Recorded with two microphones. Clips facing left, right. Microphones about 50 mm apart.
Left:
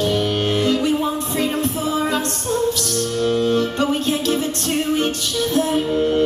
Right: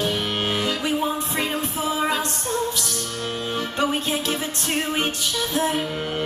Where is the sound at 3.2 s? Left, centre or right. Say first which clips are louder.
Left 10 dB; right.